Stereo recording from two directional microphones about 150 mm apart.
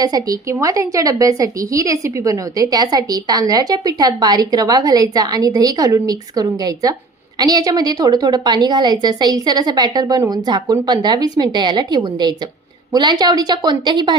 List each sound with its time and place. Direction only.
0.0 s a woman's voice: 25° right (ahead or behind)